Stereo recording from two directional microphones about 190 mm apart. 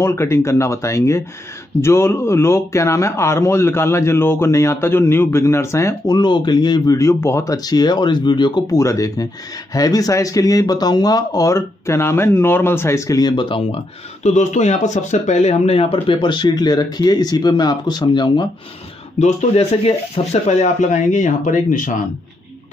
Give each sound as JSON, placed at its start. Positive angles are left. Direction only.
{"t": 0.0, "sound": "speech", "side_deg": 15}
{"t": 14.2, "sound": "speech", "side_deg": 40}
{"t": 19.1, "sound": "speech", "side_deg": 35}